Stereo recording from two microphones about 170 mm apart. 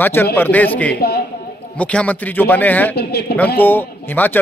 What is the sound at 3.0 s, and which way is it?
Speech, 70° left (ahead or behind).